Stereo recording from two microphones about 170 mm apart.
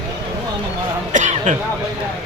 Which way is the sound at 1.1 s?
45° right (ahead or behind).